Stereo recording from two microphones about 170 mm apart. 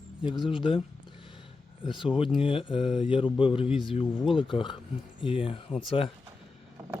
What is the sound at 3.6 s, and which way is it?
Speech, centre (ahead or behind).